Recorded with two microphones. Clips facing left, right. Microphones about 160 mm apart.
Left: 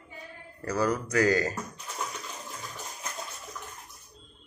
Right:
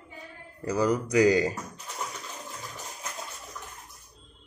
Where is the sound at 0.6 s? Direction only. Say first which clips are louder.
Right 2 dB; 15° right (ahead or behind).